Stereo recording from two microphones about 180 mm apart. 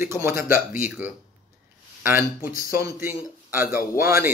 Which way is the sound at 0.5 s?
50° left (ahead or behind).